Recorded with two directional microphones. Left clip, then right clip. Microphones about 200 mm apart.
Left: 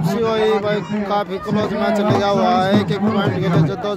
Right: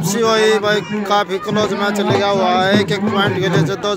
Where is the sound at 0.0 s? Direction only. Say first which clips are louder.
Right 3 dB; 10° right (ahead or behind).